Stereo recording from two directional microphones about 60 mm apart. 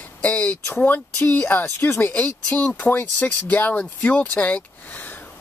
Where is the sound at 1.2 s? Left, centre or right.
Left.